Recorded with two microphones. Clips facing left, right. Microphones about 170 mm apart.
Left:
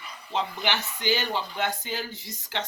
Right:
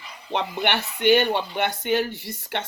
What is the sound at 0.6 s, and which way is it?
Speech, 60° right (ahead or behind).